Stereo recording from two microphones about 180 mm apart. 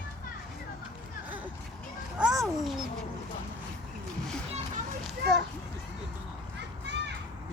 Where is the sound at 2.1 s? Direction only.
Centre (ahead or behind).